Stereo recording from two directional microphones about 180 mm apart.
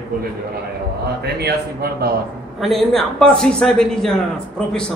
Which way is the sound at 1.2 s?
60° right (ahead or behind).